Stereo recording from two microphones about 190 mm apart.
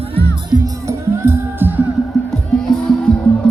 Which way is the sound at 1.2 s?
10° right (ahead or behind).